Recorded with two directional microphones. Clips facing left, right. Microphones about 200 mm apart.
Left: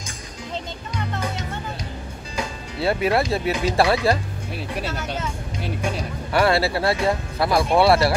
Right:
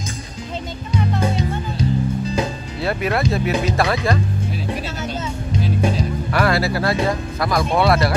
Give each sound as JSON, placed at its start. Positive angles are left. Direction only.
{"t": 1.2, "sound": "music", "side_deg": -25}
{"t": 2.8, "sound": "speech", "side_deg": 30}
{"t": 6.3, "sound": "speech", "side_deg": 30}